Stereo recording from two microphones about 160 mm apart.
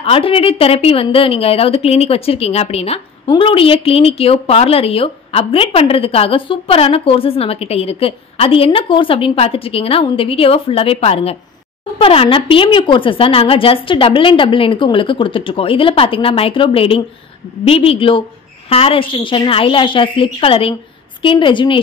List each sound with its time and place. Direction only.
0.0 s a woman's voice: 35° left (ahead or behind)